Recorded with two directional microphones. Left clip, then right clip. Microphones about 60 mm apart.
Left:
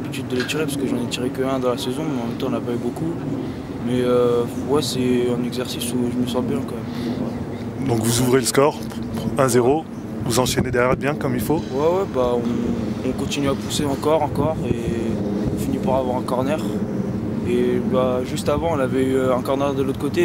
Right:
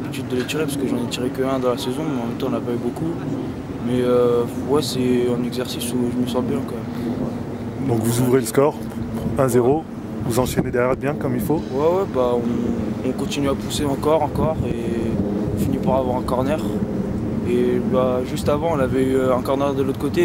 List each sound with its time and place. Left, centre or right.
0.3 s speech: centre
3.9 s speech: centre
7.8 s speech: centre